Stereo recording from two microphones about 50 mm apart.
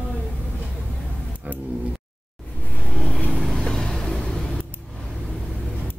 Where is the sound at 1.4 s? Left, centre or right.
Right.